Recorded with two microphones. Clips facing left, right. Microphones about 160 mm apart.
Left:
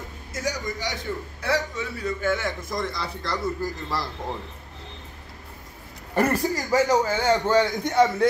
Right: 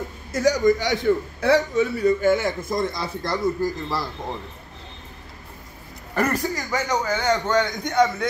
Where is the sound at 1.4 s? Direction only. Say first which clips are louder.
Right 6 dB; 55° right (ahead or behind).